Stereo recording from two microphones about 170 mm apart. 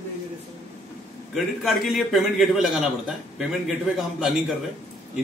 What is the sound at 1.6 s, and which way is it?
A man's voice, centre (ahead or behind).